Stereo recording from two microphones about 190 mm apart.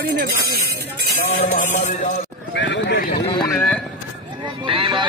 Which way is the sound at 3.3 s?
5° left (ahead or behind).